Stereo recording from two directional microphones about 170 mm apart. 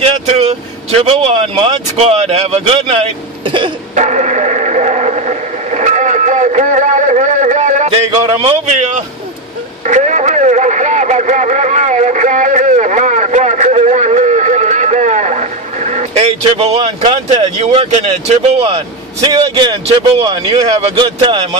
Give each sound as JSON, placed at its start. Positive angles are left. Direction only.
{"t": 0.0, "sound": "speech", "side_deg": -40}
{"t": 3.9, "sound": "radio", "side_deg": -45}
{"t": 8.4, "sound": "speech", "side_deg": -40}
{"t": 9.8, "sound": "radio", "side_deg": -45}
{"t": 18.5, "sound": "a man's voice", "side_deg": -30}